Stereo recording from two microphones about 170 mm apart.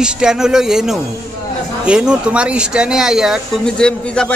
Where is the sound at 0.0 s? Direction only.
5° right (ahead or behind).